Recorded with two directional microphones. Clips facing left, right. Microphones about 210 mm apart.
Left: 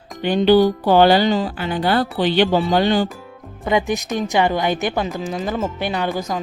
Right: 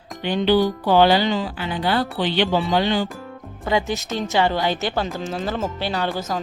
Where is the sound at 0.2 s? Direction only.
45° left (ahead or behind).